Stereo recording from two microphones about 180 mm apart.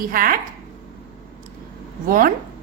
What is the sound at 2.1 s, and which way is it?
Speech, 55° right (ahead or behind).